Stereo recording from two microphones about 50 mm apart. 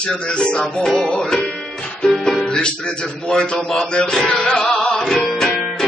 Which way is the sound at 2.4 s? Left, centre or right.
Left.